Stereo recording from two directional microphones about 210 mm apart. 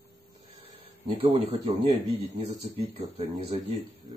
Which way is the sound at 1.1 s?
25° right (ahead or behind).